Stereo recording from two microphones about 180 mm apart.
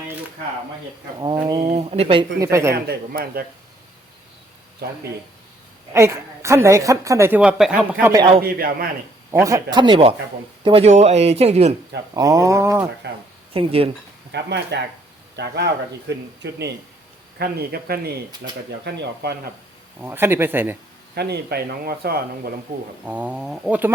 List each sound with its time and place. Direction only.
1.2 s speech: 25° right (ahead or behind)
2.4 s a woman's voice: 15° right (ahead or behind)
2.7 s speech: 60° right (ahead or behind)
5.9 s a woman's voice: 15° right (ahead or behind)
8.4 s speech: 55° right (ahead or behind)
9.4 s speech: 20° right (ahead or behind); by 11.7 s 35° right (ahead or behind)
12.1 s a woman's voice: 20° right (ahead or behind)
13.5 s speech: 30° right (ahead or behind)
14.3 s speech: 70° right (ahead or behind)
17.3 s speech: 60° right (ahead or behind)
20.0 s a woman's voice: 10° right (ahead or behind)
21.2 s speech: 65° right (ahead or behind)
23.0 s a woman's voice: 10° right (ahead or behind)